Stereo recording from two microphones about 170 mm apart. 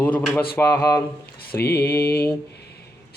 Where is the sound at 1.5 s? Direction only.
65° left (ahead or behind).